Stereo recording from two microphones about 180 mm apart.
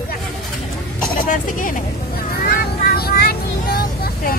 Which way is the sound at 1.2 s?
50° left (ahead or behind).